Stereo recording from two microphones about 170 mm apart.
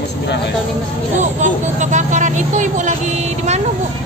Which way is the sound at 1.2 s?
45° right (ahead or behind).